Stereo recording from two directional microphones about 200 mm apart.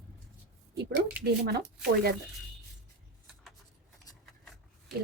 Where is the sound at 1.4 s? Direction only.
50° right (ahead or behind).